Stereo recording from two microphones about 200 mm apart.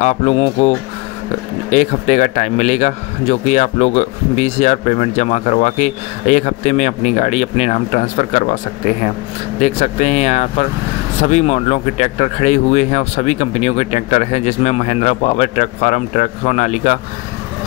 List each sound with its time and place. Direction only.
0.0 s a man's voice: 35° left (ahead or behind)
9.6 s a man's voice: 35° left (ahead or behind)